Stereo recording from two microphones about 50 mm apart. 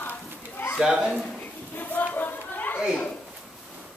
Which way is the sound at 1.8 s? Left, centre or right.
Left.